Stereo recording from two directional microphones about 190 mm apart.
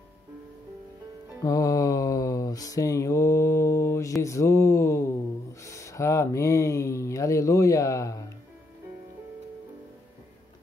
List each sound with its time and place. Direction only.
1.4 s mantra: 20° left (ahead or behind)
4.2 s speech: 15° left (ahead or behind)